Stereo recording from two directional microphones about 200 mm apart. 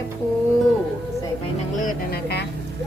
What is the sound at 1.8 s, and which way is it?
Speech, 45° left (ahead or behind).